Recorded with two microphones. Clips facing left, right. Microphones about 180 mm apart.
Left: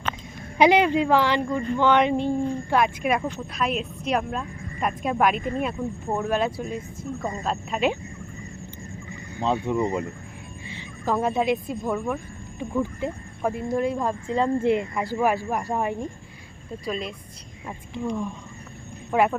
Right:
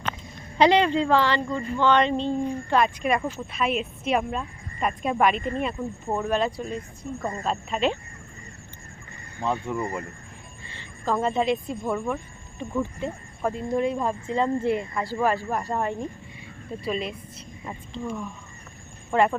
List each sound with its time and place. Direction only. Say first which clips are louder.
0.6 s speech: left 1 dB; 10° left (ahead or behind)
9.4 s speech: left 4 dB; 20° left (ahead or behind); by 12.2 s centre (ahead or behind)
12.5 s speech: left 2 dB; 10° left (ahead or behind)
13.7 s speech: right 1 dB; centre (ahead or behind)
14.3 s speech: left 3 dB; 15° left (ahead or behind)
16.8 s speech: right 1 dB; 5° right (ahead or behind)
17.9 s speech: left 5 dB; 15° left (ahead or behind)